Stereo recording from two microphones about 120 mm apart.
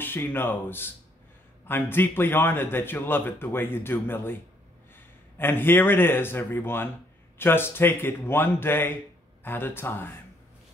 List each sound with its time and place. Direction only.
0.0 s a man's voice: 15° left (ahead or behind)